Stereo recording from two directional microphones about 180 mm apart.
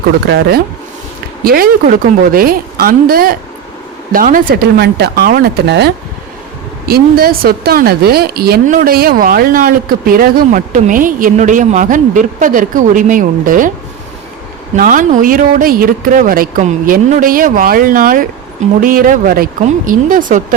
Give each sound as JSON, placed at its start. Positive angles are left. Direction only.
{"t": 0.3, "sound": "a woman's voice", "side_deg": -65}
{"t": 1.5, "sound": "a woman's voice", "side_deg": -55}
{"t": 6.8, "sound": "speech", "side_deg": -55}
{"t": 14.8, "sound": "speech", "side_deg": -50}